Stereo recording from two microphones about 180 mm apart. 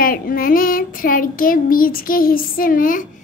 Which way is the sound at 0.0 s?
50° left (ahead or behind).